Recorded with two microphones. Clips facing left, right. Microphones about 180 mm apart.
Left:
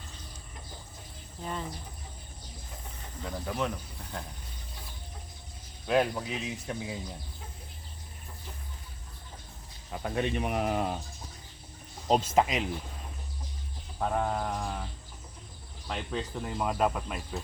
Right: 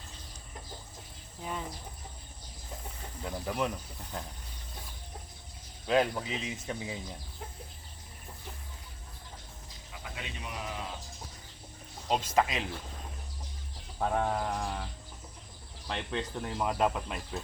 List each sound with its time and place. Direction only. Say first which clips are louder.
1.4 s speech: left 1 dB; 10° right (ahead or behind)
3.4 s speech: even; 5° right (ahead or behind)
5.9 s speech: left 1 dB; 5° left (ahead or behind)
9.9 s speech: left 13 dB; 55° left (ahead or behind)
12.0 s speech: left 5 dB; 35° left (ahead or behind)
12.4 s speech: even; 20° left (ahead or behind)
14.0 s speech: even; centre (ahead or behind)
15.9 s speech: left 1 dB; 5° left (ahead or behind)